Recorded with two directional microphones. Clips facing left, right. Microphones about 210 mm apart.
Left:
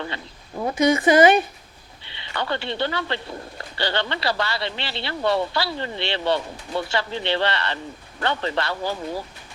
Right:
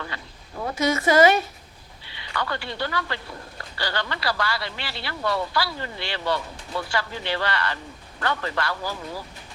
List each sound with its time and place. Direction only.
0.6 s speech: 15° left (ahead or behind)